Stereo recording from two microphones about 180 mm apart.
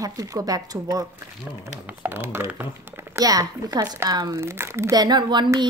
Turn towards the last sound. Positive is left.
turn(degrees=-25)  # may be behind; listen again after turning